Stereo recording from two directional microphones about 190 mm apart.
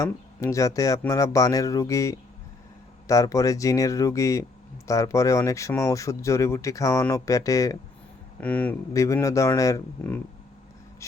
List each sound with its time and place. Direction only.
0.0 s speech: 15° left (ahead or behind)